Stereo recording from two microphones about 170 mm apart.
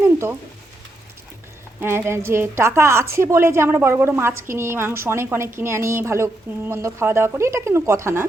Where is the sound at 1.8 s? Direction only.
15° right (ahead or behind).